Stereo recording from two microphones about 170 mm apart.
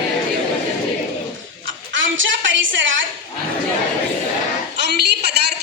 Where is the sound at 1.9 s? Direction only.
90° right.